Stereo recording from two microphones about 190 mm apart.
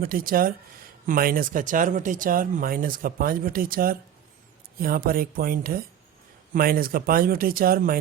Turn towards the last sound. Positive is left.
turn(degrees=-50)  # may be behind; listen again after turning